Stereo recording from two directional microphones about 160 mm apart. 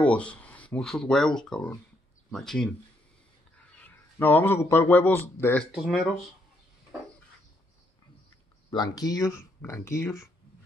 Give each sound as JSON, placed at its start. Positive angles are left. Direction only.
{"t": 0.0, "sound": "speech", "side_deg": 10}
{"t": 4.2, "sound": "speech", "side_deg": 10}
{"t": 5.7, "sound": "speech", "side_deg": 0}
{"t": 8.6, "sound": "speech", "side_deg": 25}